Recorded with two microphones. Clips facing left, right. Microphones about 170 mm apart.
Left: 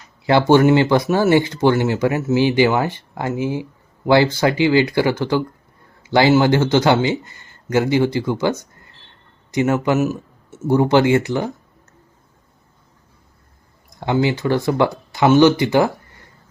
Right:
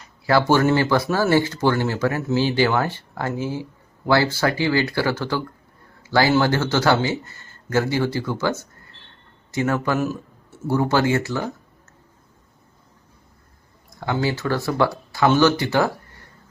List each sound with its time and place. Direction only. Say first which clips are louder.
0.3 s a man's voice: left 5 dB; 20° left (ahead or behind)
6.0 s a sound: left 4 dB; 20° left (ahead or behind)
6.3 s a man's voice: left 5 dB; 15° left (ahead or behind)
14.0 s a man's voice: left 5 dB; 20° left (ahead or behind)